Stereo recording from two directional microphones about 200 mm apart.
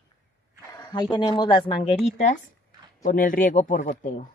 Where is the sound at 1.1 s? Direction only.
20° left (ahead or behind).